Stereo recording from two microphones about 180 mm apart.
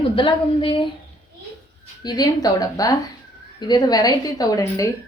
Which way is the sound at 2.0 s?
20° left (ahead or behind).